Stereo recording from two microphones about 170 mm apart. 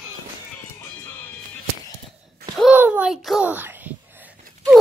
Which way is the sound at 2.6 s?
10° right (ahead or behind).